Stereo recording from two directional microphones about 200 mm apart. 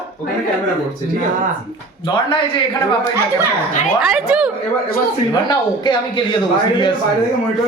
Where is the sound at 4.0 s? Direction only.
Centre (ahead or behind).